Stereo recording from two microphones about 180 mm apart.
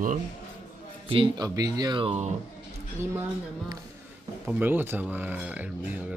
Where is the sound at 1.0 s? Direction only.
30° right (ahead or behind).